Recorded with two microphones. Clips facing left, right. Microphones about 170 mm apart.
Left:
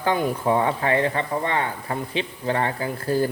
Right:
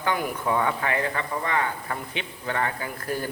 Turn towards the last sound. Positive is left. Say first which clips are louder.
# left 7 dB
turn(degrees=30)  # may be behind; listen again after turning